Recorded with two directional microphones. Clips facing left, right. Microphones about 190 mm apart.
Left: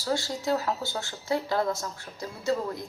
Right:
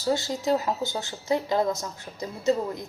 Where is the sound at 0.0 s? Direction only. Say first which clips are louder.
Right 3 dB; 20° right (ahead or behind).